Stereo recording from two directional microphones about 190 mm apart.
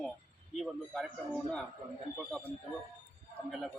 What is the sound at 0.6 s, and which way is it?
Speech, centre (ahead or behind).